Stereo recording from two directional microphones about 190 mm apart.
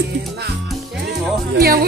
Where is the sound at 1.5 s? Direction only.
55° right (ahead or behind).